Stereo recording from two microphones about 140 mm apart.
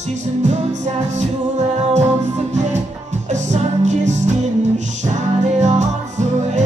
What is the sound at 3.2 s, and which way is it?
Music, 55° right (ahead or behind).